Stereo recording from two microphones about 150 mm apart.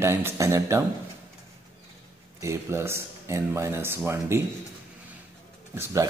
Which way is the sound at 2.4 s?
20° right (ahead or behind).